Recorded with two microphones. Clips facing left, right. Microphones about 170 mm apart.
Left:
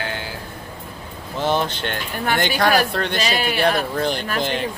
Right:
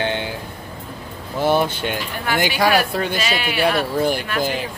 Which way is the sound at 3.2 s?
40° left (ahead or behind).